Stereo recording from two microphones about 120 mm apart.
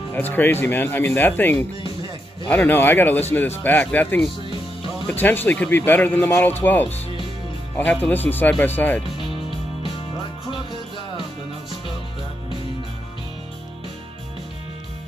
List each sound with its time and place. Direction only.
0.1 s speech: 15° left (ahead or behind)